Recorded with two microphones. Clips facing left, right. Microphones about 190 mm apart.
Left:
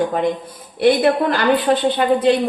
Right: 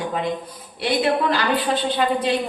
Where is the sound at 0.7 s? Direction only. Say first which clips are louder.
Left 6 dB; 50° left (ahead or behind).